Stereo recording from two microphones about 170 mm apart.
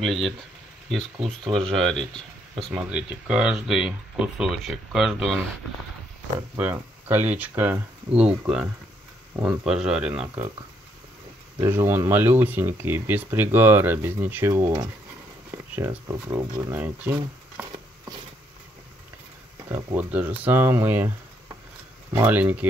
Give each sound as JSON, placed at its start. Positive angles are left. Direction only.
{"t": 0.0, "sound": "speech", "side_deg": 0}
{"t": 1.1, "sound": "speech", "side_deg": -30}
{"t": 1.5, "sound": "speech", "side_deg": 0}
{"t": 6.5, "sound": "speech", "side_deg": -10}
{"t": 11.6, "sound": "speech", "side_deg": -15}
{"t": 16.7, "sound": "speech", "side_deg": -10}
{"t": 19.7, "sound": "speech", "side_deg": -10}
{"t": 22.1, "sound": "speech", "side_deg": -10}